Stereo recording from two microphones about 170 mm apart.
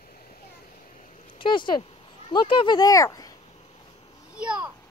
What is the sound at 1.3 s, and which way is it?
Speech, 30° left (ahead or behind).